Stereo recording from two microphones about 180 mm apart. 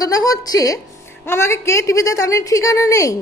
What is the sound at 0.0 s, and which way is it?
A woman's voice, 20° left (ahead or behind).